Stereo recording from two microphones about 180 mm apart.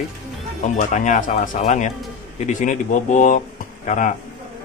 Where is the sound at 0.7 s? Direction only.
45° left (ahead or behind).